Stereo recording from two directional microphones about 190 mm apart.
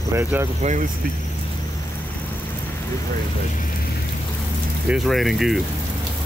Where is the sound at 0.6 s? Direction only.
40° right (ahead or behind).